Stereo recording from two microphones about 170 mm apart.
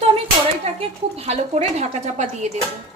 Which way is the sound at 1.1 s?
40° right (ahead or behind).